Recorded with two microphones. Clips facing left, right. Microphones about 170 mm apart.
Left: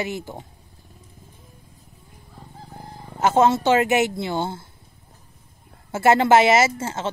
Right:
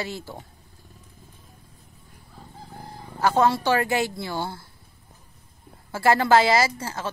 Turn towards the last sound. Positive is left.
turn(degrees=25)  # may be behind; listen again after turning